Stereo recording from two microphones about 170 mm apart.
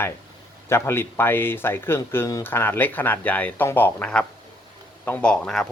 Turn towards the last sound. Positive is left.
turn(degrees=5)  # may be behind; listen again after turning